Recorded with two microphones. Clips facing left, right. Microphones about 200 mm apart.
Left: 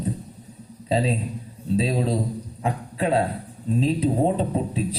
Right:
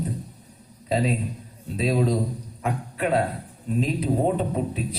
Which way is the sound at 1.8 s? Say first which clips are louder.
Right 2 dB; 30° left (ahead or behind).